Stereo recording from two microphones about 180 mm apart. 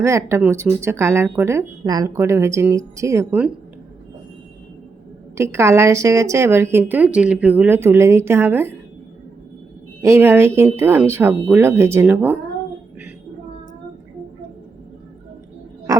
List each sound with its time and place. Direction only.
0.0 s speech: 15° right (ahead or behind)
5.4 s speech: 15° right (ahead or behind)
10.0 s speech: 15° right (ahead or behind)